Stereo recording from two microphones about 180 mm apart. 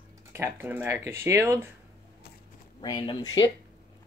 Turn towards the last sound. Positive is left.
turn(degrees=25)  # may be behind; listen again after turning